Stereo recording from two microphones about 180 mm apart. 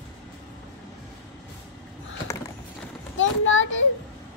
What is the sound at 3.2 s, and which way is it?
Children playing, 90° left.